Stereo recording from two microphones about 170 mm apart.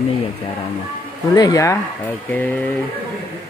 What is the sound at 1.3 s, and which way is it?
Speech, 20° left (ahead or behind).